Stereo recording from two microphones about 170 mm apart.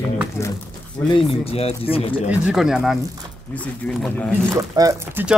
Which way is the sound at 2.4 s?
5° right (ahead or behind).